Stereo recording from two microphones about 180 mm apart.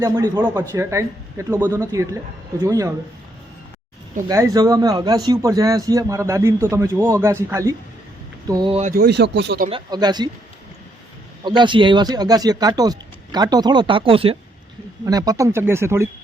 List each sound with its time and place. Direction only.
0.0 s a man's voice: 20° right (ahead or behind)
4.3 s a man's voice: 20° right (ahead or behind)
8.9 s speech: 60° right (ahead or behind)
9.6 s a man's voice: 25° right (ahead or behind)
11.4 s a man's voice: 25° right (ahead or behind)
15.0 s speech: 20° right (ahead or behind)